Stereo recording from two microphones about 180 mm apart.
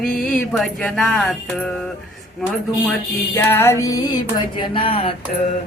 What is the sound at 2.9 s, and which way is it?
Music, 10° left (ahead or behind).